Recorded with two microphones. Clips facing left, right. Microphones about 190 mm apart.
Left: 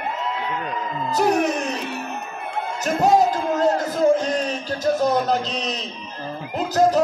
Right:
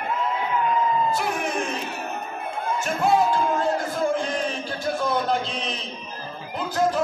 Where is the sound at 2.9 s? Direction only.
40° left (ahead or behind).